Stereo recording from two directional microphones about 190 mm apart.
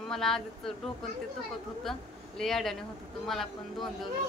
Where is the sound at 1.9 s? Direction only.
Centre (ahead or behind).